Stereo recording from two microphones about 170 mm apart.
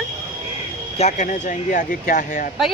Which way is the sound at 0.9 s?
45° left (ahead or behind).